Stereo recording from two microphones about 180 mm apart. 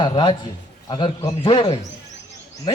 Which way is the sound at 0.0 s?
25° left (ahead or behind).